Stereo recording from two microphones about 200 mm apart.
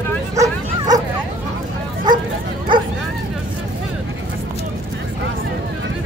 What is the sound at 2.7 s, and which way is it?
Bow-wow, 25° right (ahead or behind).